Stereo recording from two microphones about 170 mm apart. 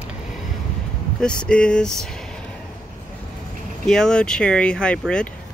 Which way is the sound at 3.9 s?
5° left (ahead or behind).